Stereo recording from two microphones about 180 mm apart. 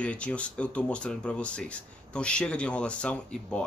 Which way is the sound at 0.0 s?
5° left (ahead or behind).